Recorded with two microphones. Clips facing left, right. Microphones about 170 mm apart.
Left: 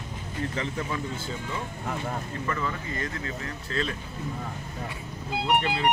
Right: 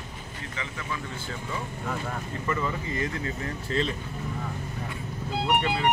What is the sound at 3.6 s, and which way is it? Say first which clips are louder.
Speech: right 3 dB; 30° right (ahead or behind).